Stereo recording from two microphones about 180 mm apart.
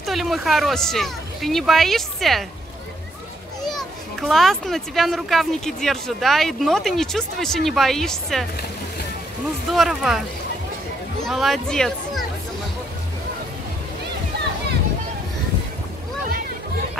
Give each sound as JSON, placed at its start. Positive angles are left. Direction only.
{"t": 0.0, "sound": "a child's voice", "side_deg": 0}
{"t": 3.6, "sound": "a child's voice", "side_deg": 0}
{"t": 9.7, "sound": "a child's voice", "side_deg": 0}
{"t": 11.2, "sound": "speech", "side_deg": 0}
{"t": 14.3, "sound": "a sound", "side_deg": -65}